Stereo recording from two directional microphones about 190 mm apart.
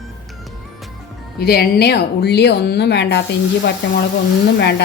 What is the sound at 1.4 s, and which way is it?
A woman's voice, 55° left (ahead or behind).